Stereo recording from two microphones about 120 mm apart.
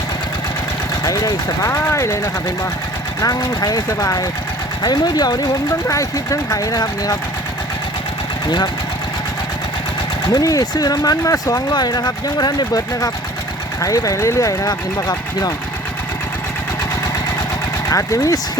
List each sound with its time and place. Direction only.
1.0 s speech: 30° left (ahead or behind)
8.4 s speech: 35° left (ahead or behind)
10.2 s speech: 30° left (ahead or behind)
17.8 s speech: 25° left (ahead or behind)